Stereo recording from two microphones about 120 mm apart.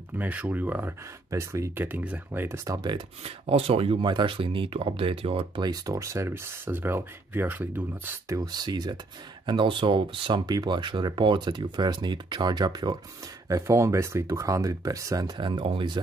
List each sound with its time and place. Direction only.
0.2 s speech: 15° right (ahead or behind); by 3.0 s 30° right (ahead or behind)
3.3 s speech: 55° right (ahead or behind)
5.6 s speech: 30° right (ahead or behind)
8.4 s speech: 35° right (ahead or behind)